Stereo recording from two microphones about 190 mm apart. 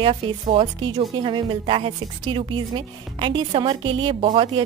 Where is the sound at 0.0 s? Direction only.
30° right (ahead or behind).